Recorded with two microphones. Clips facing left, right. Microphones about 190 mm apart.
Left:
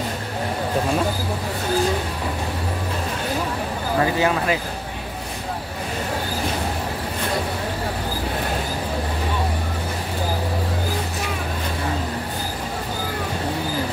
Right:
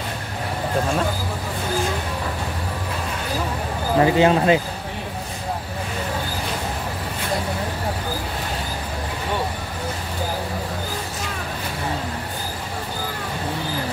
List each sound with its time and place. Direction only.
4.0 s speech: 25° right (ahead or behind)